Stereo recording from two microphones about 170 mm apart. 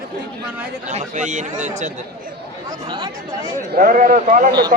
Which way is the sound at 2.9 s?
25° right (ahead or behind).